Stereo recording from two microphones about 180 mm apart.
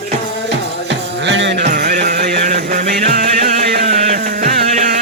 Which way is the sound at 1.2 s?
85° right.